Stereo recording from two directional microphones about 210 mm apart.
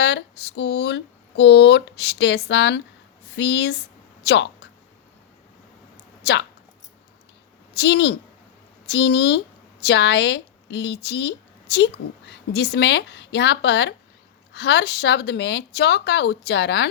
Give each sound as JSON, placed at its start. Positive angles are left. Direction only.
{"t": 0.0, "sound": "speech", "side_deg": 55}
{"t": 4.2, "sound": "a sound", "side_deg": 55}
{"t": 7.7, "sound": "a woman's voice", "side_deg": 55}